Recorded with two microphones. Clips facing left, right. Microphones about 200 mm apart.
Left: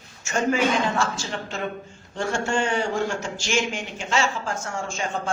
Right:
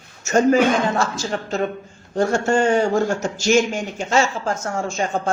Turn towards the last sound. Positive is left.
turn(degrees=-40)  # may be behind; listen again after turning